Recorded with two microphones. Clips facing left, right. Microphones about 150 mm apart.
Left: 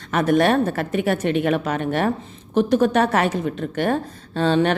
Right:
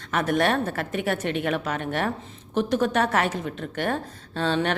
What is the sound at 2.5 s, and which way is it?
Speech, 45° left (ahead or behind).